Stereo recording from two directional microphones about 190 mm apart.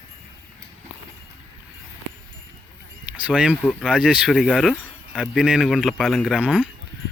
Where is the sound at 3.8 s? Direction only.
5° right (ahead or behind).